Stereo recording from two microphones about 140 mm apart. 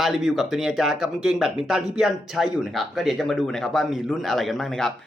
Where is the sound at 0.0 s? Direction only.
Centre (ahead or behind).